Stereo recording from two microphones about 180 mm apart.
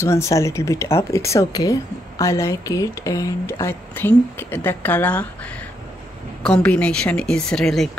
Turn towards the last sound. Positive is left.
turn(degrees=0)  # may be behind; listen again after turning